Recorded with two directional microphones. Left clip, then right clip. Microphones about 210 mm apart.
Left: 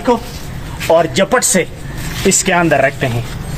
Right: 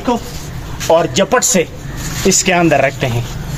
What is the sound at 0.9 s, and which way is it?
A man's voice, centre (ahead or behind).